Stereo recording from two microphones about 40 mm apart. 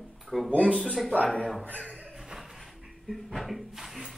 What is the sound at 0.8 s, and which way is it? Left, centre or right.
Mantra, centre.